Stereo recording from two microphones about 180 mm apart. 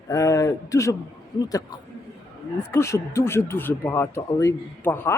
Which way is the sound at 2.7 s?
15° left (ahead or behind).